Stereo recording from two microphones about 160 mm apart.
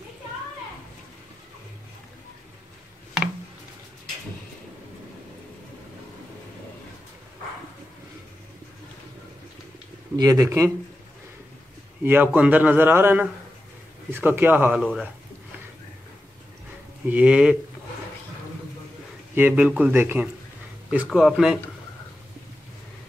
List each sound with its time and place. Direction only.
10.1 s speech: 20° right (ahead or behind)
12.0 s a man's voice: 10° right (ahead or behind)
14.8 s speech: centre (ahead or behind)
17.1 s a man's voice: 10° right (ahead or behind)
19.3 s a man's voice: 10° right (ahead or behind)